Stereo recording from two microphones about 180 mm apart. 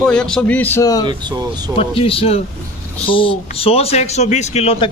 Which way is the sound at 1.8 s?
30° left (ahead or behind).